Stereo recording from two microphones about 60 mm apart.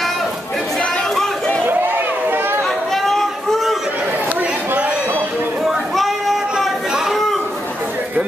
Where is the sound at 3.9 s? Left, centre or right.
Right.